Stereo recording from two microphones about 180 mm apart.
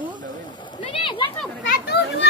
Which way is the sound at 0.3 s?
25° left (ahead or behind).